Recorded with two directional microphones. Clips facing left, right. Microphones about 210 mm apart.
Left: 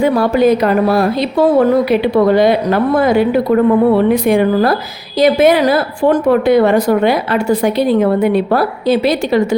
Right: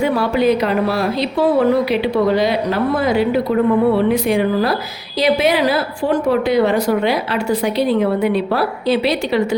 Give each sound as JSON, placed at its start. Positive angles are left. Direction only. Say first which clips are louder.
{"t": 0.0, "sound": "a woman's voice", "louder": "left 4 dB", "side_deg": 45}